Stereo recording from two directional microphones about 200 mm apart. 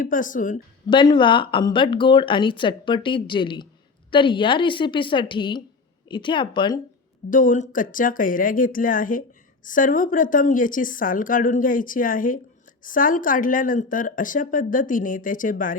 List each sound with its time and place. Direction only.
0.0 s a woman's voice: 40° left (ahead or behind)
0.9 s speech: 25° left (ahead or behind)
7.3 s speech: 40° left (ahead or behind)